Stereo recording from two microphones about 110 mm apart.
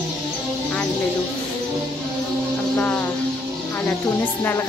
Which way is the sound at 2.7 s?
15° left (ahead or behind).